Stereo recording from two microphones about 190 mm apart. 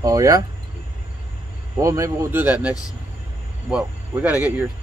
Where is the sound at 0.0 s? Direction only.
20° right (ahead or behind).